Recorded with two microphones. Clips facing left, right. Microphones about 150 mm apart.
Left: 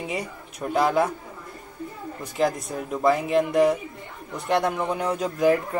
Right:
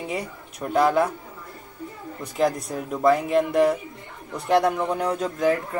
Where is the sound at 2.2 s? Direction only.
Centre (ahead or behind).